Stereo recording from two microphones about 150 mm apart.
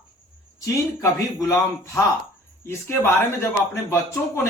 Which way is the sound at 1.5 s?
20° left (ahead or behind).